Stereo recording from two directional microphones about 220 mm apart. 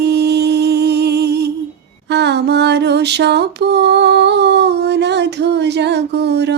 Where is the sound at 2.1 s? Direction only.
50° right (ahead or behind).